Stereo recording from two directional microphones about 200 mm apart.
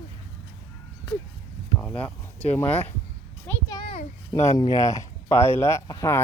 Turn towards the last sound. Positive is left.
turn(degrees=15)  # may be behind; listen again after turning